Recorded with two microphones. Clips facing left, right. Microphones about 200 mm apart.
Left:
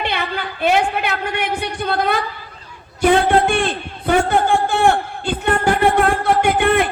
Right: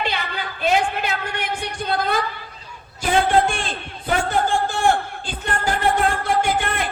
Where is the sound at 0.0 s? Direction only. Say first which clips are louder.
Left 3 dB; 60° left (ahead or behind).